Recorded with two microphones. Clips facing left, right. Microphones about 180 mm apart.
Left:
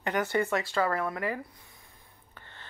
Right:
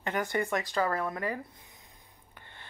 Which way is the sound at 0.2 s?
15° right (ahead or behind).